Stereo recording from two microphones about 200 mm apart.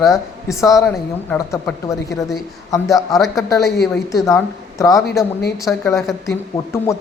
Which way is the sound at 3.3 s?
15° left (ahead or behind).